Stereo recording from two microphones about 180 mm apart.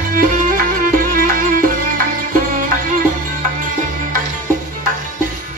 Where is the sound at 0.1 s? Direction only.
50° right (ahead or behind).